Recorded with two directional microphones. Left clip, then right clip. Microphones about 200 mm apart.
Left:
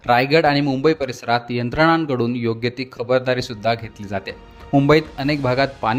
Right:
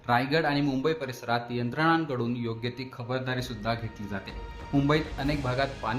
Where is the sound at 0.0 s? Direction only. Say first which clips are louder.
Left 10 dB; 45° left (ahead or behind).